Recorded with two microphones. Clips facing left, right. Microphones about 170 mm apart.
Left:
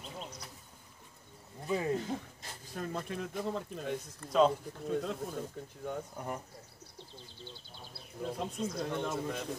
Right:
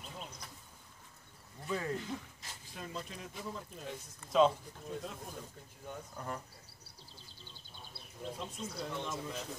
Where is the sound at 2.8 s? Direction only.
55° left (ahead or behind).